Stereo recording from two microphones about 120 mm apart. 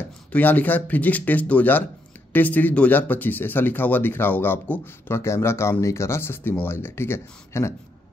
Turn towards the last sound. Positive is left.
turn(degrees=20)  # may be behind; listen again after turning